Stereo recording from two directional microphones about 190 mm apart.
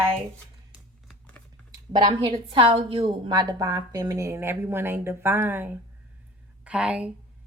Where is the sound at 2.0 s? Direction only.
25° right (ahead or behind).